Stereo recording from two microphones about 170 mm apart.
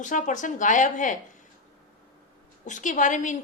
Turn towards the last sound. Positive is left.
turn(degrees=50)  # may be behind; listen again after turning